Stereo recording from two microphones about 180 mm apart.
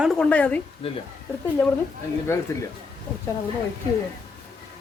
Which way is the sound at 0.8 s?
30° left (ahead or behind).